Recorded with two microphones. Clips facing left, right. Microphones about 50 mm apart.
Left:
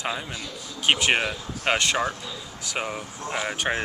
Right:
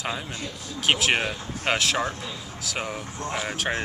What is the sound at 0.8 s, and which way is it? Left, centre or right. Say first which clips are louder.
Speech: left 1 dB; centre.